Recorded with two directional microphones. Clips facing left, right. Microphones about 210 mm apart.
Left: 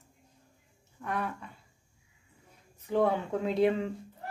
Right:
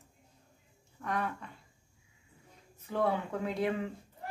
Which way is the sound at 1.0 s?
5° left (ahead or behind).